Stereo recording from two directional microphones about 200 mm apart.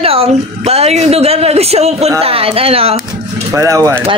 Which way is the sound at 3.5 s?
15° right (ahead or behind).